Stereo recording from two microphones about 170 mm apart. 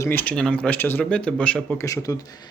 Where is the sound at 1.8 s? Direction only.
20° left (ahead or behind).